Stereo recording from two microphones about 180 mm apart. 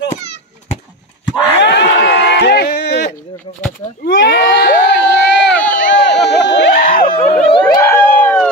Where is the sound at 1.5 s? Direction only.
70° left (ahead or behind).